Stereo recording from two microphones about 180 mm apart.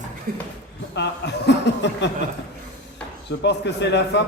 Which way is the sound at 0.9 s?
70° left (ahead or behind).